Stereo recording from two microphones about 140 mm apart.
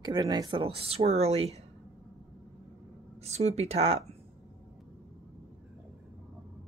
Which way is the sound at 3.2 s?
50° right (ahead or behind).